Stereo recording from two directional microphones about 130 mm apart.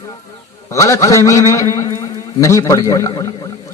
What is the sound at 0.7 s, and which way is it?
A man's voice, 25° left (ahead or behind).